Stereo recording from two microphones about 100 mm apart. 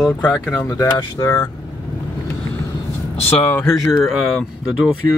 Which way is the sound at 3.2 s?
75° left (ahead or behind).